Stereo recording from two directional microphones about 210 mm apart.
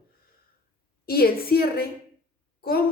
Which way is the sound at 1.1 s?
45° left (ahead or behind).